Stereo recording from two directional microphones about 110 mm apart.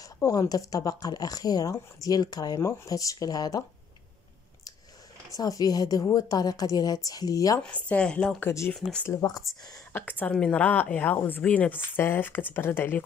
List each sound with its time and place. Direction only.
0.0 s speech: 30° left (ahead or behind)
5.3 s speech: 35° left (ahead or behind)
7.6 s speech: 10° left (ahead or behind)
8.4 s speech: 20° left (ahead or behind)
9.5 s speech: centre (ahead or behind)
9.9 s speech: 15° left (ahead or behind)